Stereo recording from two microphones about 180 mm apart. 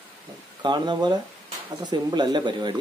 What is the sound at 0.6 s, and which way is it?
Speech, 25° right (ahead or behind).